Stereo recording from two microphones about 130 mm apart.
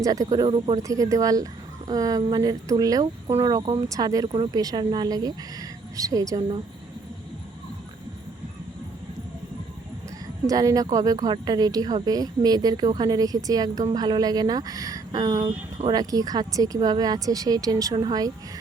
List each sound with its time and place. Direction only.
0.0 s speech: 25° right (ahead or behind)
0.4 s speech: 40° right (ahead or behind)
0.8 s speech: 25° right (ahead or behind)
10.4 s speech: 25° right (ahead or behind)